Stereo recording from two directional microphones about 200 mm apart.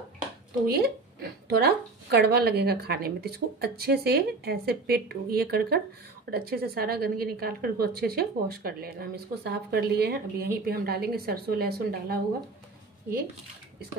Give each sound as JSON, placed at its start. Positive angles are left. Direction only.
{"t": 0.7, "sound": "a woman's voice", "side_deg": -50}